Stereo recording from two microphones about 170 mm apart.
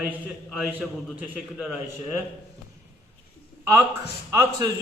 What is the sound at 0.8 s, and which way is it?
Speech, centre (ahead or behind).